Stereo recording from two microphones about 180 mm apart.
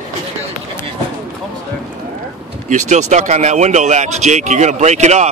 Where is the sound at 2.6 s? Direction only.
40° right (ahead or behind).